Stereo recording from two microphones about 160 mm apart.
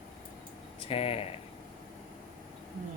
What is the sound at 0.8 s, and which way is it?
Speech, 40° left (ahead or behind).